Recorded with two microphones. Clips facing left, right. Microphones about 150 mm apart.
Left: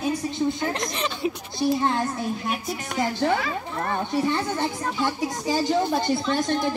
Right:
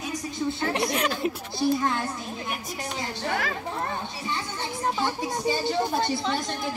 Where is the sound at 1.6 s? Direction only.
20° left (ahead or behind).